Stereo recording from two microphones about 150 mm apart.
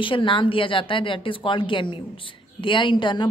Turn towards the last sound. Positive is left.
turn(degrees=30)  # may be behind; listen again after turning